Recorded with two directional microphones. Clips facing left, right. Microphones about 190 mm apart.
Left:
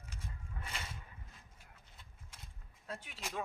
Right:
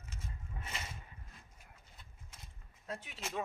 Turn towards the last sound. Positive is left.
turn(degrees=0)  # may be behind; listen again after turning